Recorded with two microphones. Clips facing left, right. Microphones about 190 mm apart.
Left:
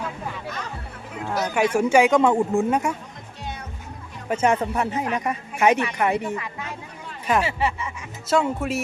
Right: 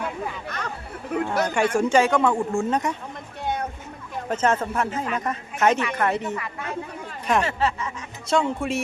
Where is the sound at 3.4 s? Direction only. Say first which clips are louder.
Right 8 dB; 55° right (ahead or behind).